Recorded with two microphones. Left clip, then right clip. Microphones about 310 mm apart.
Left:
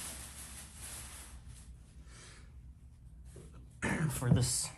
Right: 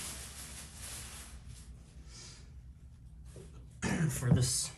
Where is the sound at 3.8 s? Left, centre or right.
Centre.